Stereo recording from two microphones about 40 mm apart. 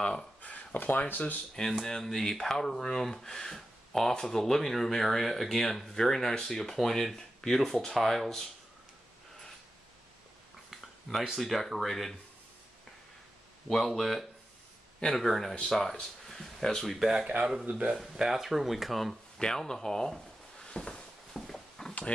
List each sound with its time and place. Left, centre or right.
0.0 s speech: centre
0.7 s speech: left
1.9 s speech: centre
10.7 s a sound: centre
11.3 s speech: centre
13.7 s speech: centre
17.0 s speech: centre
17.6 s speech: right
17.9 s speech: centre
19.4 s speech: centre
21.3 s a sound: centre